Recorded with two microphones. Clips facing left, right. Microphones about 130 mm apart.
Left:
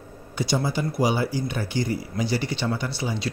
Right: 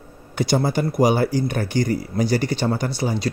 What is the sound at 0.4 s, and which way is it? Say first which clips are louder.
Speech: right 5 dB; 55° right (ahead or behind).